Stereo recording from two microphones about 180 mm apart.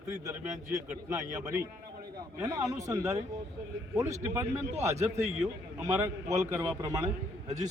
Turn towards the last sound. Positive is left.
turn(degrees=-20)  # may be behind; listen again after turning